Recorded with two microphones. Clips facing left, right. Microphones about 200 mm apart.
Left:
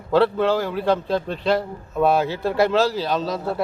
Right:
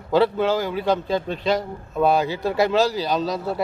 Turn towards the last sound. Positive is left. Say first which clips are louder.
# even
turn(degrees=0)  # may be behind; listen again after turning